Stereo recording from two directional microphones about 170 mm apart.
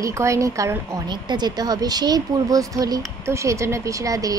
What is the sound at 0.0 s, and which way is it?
Speech, 15° right (ahead or behind).